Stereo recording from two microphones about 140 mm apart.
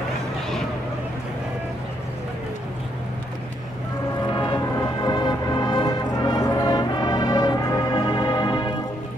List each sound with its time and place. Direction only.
4.3 s music: 35° left (ahead or behind)